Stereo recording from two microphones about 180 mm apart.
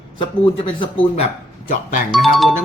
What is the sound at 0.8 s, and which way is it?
Speech, 30° left (ahead or behind).